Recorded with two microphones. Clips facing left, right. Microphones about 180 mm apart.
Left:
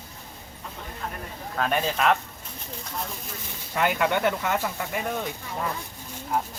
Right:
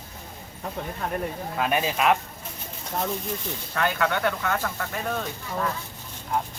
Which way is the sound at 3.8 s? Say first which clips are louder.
Left 2 dB; 15° left (ahead or behind).